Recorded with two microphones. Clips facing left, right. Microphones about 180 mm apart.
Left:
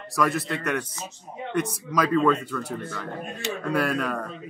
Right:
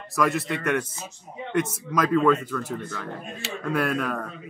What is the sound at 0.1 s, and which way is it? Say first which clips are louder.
Speech: right 1 dB; centre (ahead or behind).